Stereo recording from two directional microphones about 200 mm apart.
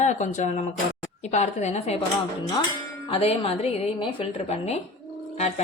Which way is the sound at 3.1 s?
30° left (ahead or behind).